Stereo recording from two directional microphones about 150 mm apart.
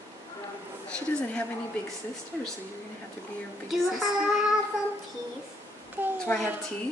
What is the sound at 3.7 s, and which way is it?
Speech, centre (ahead or behind).